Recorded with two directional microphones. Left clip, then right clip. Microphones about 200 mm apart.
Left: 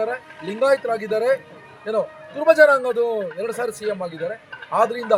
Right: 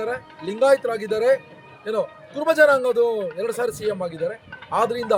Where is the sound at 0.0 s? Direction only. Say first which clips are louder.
Left 2 dB; 30° right (ahead or behind).